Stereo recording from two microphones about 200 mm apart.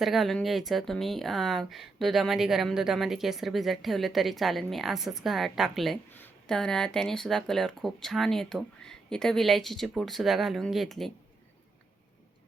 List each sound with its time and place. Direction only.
0.0 s speech: centre (ahead or behind)